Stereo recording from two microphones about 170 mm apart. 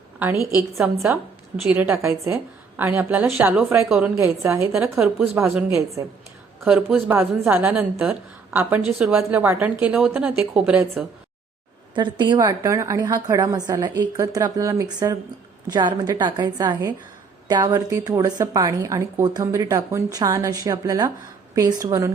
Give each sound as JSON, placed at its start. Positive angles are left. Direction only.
{"t": 0.8, "sound": "a woman's voice", "side_deg": -10}
{"t": 4.2, "sound": "a woman's voice", "side_deg": -15}
{"t": 4.9, "sound": "a woman's voice", "side_deg": -5}
{"t": 5.3, "sound": "a woman's voice", "side_deg": -15}
{"t": 12.2, "sound": "a woman's voice", "side_deg": -25}